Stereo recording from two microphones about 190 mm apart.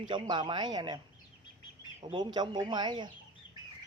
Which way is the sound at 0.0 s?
25° right (ahead or behind).